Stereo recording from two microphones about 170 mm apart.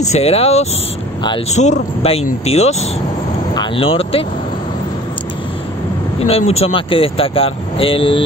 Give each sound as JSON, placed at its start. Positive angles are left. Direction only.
{"t": 0.0, "sound": "speech", "side_deg": 40}
{"t": 6.1, "sound": "speech", "side_deg": 35}